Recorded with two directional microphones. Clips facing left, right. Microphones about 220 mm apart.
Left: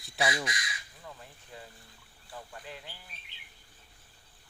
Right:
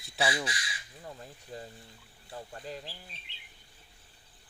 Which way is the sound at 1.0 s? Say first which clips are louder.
Right 3 dB; 40° right (ahead or behind).